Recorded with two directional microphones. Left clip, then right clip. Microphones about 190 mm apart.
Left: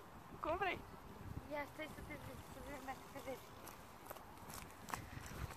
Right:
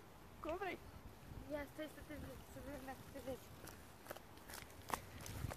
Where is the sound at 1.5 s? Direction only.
50° right (ahead or behind).